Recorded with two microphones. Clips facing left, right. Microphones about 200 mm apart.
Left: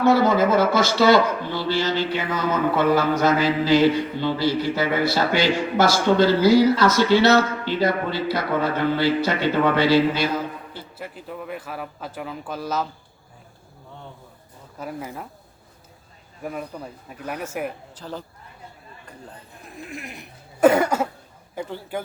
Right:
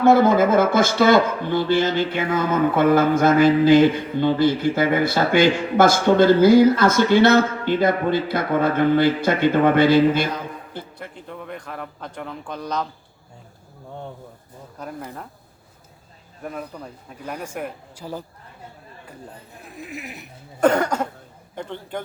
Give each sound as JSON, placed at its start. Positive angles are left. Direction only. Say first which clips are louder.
{"t": 0.0, "sound": "speech", "louder": "right 3 dB", "side_deg": -50}
{"t": 10.9, "sound": "a man's voice", "louder": "left 1 dB", "side_deg": 5}
{"t": 14.8, "sound": "a man's voice", "louder": "left 2 dB", "side_deg": 5}
{"t": 16.4, "sound": "a man's voice", "louder": "left 1 dB", "side_deg": 5}
{"t": 17.9, "sound": "speech", "louder": "right 2 dB", "side_deg": -10}
{"t": 19.6, "sound": "speech", "louder": "right 1 dB", "side_deg": -5}
{"t": 20.7, "sound": "a man's voice", "louder": "left 2 dB", "side_deg": 10}